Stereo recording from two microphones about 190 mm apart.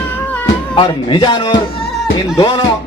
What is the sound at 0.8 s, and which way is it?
A man's voice, 25° left (ahead or behind).